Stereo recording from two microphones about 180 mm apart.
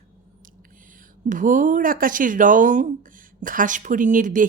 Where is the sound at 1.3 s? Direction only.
45° right (ahead or behind).